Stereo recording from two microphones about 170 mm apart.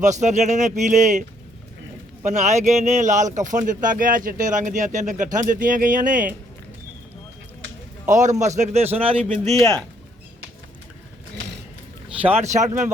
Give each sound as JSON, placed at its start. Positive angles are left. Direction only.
{"t": 0.0, "sound": "speech", "side_deg": -45}
{"t": 2.2, "sound": "speech", "side_deg": -45}
{"t": 8.0, "sound": "a man's voice", "side_deg": -45}
{"t": 9.5, "sound": "speech", "side_deg": 0}
{"t": 12.3, "sound": "speech", "side_deg": -45}